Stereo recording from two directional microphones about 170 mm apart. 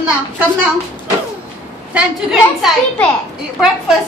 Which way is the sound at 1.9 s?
Centre (ahead or behind).